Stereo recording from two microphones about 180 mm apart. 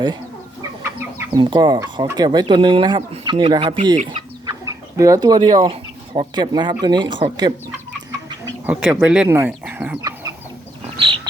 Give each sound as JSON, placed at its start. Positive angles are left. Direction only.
{"t": 0.8, "sound": "chicken", "side_deg": -10}
{"t": 1.4, "sound": "speech", "side_deg": -25}
{"t": 8.6, "sound": "speech", "side_deg": -5}
{"t": 10.0, "sound": "chicken", "side_deg": -20}